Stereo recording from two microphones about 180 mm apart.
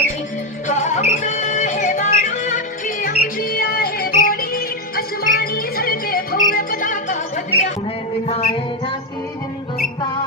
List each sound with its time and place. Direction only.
0.7 s music: 40° left (ahead or behind)
8.3 s music: 30° left (ahead or behind)